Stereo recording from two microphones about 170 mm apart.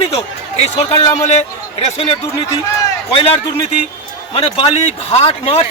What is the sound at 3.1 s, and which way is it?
A man's voice, 35° left (ahead or behind).